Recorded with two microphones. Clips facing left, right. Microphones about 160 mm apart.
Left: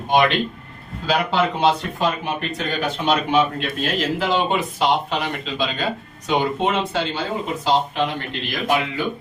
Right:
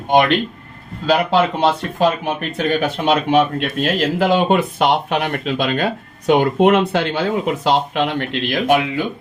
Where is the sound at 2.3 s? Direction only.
50° right (ahead or behind).